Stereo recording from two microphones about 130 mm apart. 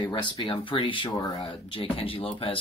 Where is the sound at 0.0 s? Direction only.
35° left (ahead or behind).